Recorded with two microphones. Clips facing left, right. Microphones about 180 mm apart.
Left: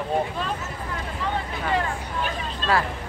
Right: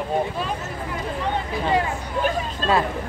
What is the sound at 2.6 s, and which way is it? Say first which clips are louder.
Speech: right 2 dB; 45° right (ahead or behind).